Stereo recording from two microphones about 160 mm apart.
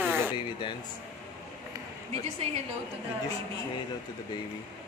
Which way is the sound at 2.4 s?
40° right (ahead or behind).